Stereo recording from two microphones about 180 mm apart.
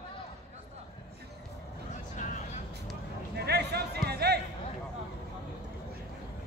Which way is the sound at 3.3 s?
65° right (ahead or behind).